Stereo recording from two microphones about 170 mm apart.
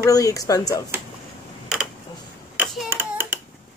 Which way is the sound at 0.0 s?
20° left (ahead or behind).